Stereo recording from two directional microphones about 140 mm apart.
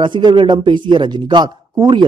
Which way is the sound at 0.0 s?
35° right (ahead or behind).